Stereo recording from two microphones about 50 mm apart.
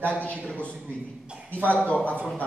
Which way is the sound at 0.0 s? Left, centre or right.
Left.